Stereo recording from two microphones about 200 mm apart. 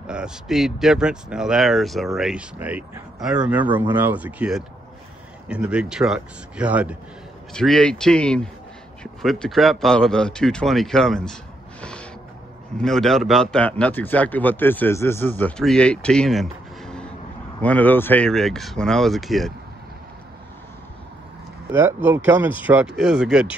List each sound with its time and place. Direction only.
0.0 s a man's voice: 5° right (ahead or behind)
11.8 s music: 5° left (ahead or behind)
12.7 s a man's voice: centre (ahead or behind)
21.7 s speech: 10° right (ahead or behind)